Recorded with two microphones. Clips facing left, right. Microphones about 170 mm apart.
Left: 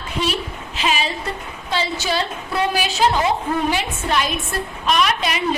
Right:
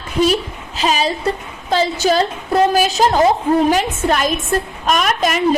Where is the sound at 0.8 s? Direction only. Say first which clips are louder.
Right 5 dB; 40° right (ahead or behind).